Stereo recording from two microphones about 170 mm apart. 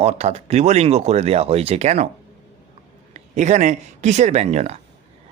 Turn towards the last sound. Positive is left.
turn(degrees=-40)  # may be behind; listen again after turning